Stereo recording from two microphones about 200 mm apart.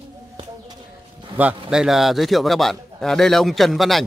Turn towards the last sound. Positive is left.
turn(degrees=0)  # may be behind; listen again after turning